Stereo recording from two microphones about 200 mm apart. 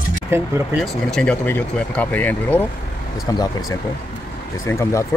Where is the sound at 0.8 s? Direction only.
5° left (ahead or behind).